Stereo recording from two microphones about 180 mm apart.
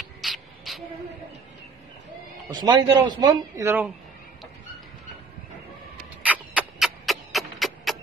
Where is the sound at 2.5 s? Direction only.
25° right (ahead or behind).